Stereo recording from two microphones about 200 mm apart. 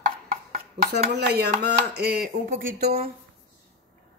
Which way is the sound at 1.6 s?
55° right (ahead or behind).